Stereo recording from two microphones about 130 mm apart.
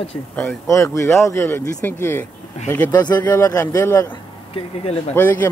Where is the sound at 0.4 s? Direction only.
20° left (ahead or behind).